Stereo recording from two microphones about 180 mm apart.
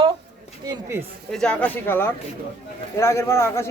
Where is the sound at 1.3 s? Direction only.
5° left (ahead or behind).